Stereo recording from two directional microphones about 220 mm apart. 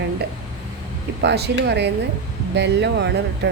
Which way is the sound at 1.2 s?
50° right (ahead or behind).